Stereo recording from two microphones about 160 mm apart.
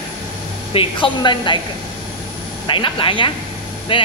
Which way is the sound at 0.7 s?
30° left (ahead or behind).